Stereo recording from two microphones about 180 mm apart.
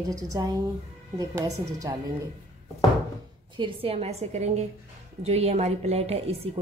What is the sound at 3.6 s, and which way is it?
Speech, 30° right (ahead or behind).